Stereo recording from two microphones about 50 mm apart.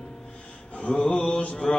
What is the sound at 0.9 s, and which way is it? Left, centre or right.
Mantra, centre.